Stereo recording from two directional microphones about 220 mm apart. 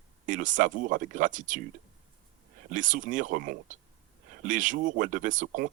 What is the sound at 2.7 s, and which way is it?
Speech, 35° right (ahead or behind).